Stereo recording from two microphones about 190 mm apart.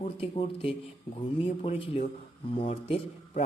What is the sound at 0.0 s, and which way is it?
Speech, 30° left (ahead or behind).